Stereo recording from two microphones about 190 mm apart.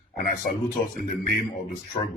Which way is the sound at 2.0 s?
30° left (ahead or behind).